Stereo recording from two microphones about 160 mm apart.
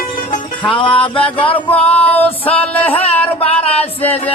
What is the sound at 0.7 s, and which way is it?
Music, 30° left (ahead or behind).